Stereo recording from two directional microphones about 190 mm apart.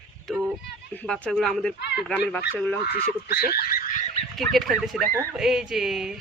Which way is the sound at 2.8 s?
55° left (ahead or behind).